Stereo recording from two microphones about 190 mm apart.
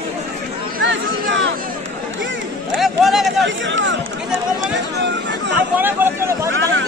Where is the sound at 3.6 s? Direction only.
75° right (ahead or behind).